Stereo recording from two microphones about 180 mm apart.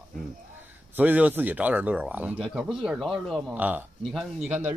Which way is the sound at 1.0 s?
10° right (ahead or behind).